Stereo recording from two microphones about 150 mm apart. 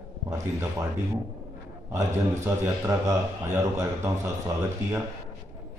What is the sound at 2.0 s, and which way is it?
A man's voice, 20° right (ahead or behind).